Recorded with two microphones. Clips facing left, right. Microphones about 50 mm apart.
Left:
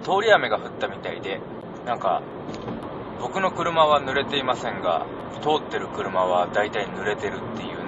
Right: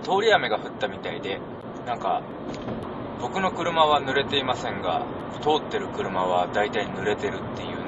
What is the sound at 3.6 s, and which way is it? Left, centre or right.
A man's voice, centre.